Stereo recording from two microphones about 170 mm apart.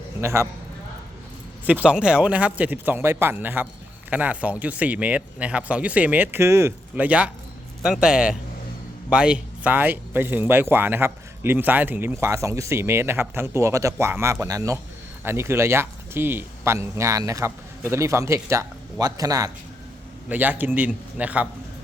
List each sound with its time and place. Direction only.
0.2 s a man's voice: 15° right (ahead or behind)
1.6 s speech: 10° right (ahead or behind)
20.3 s speech: 10° right (ahead or behind)